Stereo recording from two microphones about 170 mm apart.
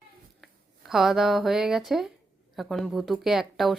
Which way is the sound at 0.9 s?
Centre (ahead or behind).